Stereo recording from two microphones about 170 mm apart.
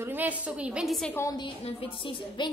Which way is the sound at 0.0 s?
10° right (ahead or behind).